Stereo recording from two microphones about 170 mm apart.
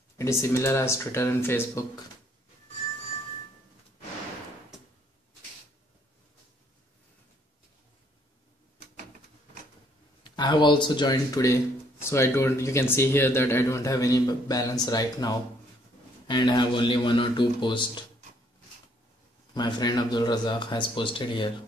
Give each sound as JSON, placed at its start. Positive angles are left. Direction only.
{"t": 0.2, "sound": "speech", "side_deg": 15}
{"t": 10.2, "sound": "speech", "side_deg": 25}
{"t": 19.5, "sound": "speech", "side_deg": 25}